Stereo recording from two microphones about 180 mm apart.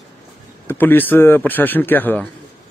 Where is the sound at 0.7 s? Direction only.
10° left (ahead or behind).